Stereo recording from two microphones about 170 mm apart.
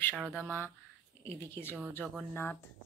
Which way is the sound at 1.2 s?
15° left (ahead or behind).